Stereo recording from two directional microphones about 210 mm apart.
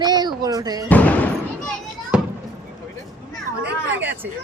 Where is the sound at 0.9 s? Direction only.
5° left (ahead or behind).